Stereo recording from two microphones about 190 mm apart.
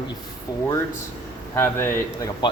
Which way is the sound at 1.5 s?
10° left (ahead or behind).